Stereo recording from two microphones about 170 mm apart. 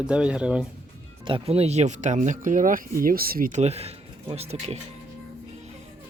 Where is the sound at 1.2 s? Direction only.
30° right (ahead or behind).